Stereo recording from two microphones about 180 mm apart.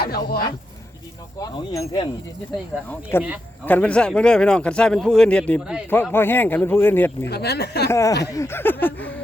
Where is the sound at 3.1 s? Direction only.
15° left (ahead or behind).